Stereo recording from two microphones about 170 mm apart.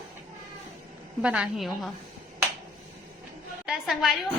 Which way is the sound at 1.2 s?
5° right (ahead or behind).